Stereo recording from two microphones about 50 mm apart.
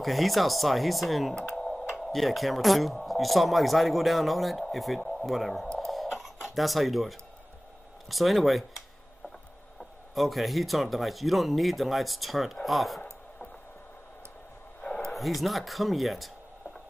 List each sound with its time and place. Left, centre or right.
0.0 s speech: centre
5.9 s a sound: centre
8.1 s speech: centre
10.1 s speech: centre
14.8 s a sound: left
15.0 s speech: centre